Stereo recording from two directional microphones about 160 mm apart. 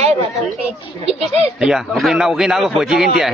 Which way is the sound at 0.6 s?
40° right (ahead or behind).